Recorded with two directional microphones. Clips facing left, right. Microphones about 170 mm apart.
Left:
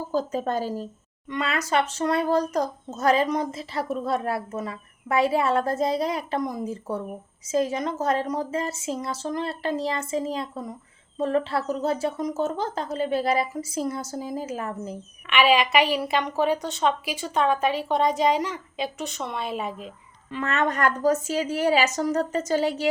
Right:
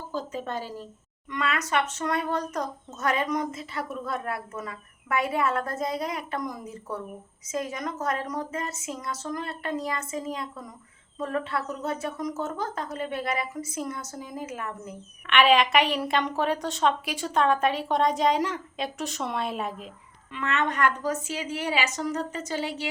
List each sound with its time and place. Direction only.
0.1 s a woman's voice: 40° left (ahead or behind)
1.3 s a child's voice: 30° left (ahead or behind)
15.3 s a woman's voice: 5° left (ahead or behind)
20.3 s a child's voice: 40° left (ahead or behind)